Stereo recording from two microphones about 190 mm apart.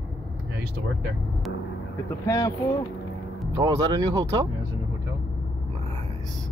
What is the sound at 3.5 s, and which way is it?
Speech, 20° right (ahead or behind).